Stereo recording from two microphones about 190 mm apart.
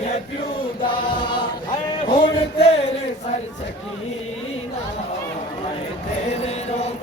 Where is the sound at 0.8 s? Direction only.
25° left (ahead or behind).